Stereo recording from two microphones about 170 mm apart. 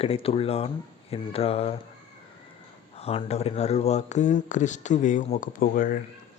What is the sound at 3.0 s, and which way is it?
Speech, 35° left (ahead or behind).